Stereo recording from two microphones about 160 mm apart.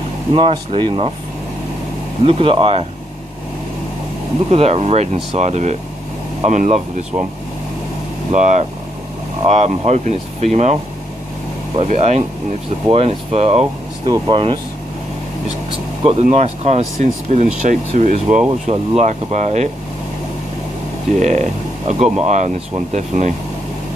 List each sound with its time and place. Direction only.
0.3 s speech: 35° right (ahead or behind)
2.2 s speech: 35° right (ahead or behind)
4.5 s speech: 40° right (ahead or behind)
8.3 s speech: 45° right (ahead or behind)
14.0 s speech: 25° right (ahead or behind)
16.0 s speech: 40° right (ahead or behind)
21.2 s speech: 45° right (ahead or behind)